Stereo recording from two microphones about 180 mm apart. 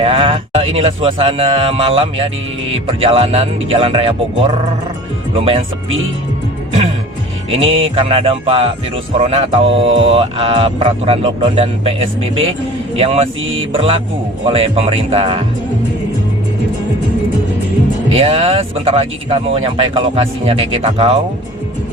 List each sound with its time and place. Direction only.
0.0 s speech: 30° right (ahead or behind)
5.5 s speech: 30° right (ahead or behind)
7.5 s speech: 30° right (ahead or behind)
18.1 s speech: 30° right (ahead or behind)